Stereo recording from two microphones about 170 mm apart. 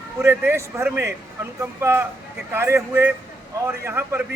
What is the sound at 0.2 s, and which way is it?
Speech, 15° right (ahead or behind).